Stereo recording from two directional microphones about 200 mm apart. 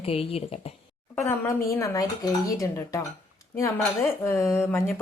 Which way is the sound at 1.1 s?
15° left (ahead or behind).